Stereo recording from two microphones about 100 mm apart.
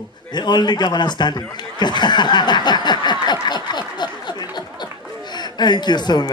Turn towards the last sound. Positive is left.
turn(degrees=45)  # may be behind; listen again after turning